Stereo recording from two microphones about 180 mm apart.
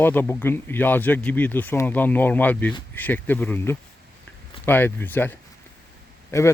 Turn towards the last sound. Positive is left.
turn(degrees=15)  # may be behind; listen again after turning